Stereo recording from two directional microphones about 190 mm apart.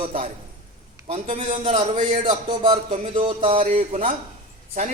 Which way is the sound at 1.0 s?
35° right (ahead or behind).